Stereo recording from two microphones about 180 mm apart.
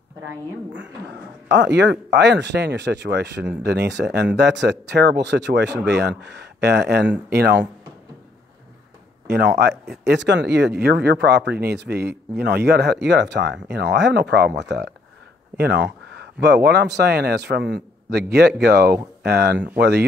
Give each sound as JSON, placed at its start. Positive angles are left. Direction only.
{"t": 1.5, "sound": "speech", "side_deg": -75}
{"t": 9.3, "sound": "speech", "side_deg": -65}